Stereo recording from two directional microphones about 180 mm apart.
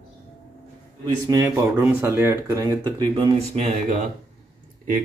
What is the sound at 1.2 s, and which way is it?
Speech, 15° right (ahead or behind).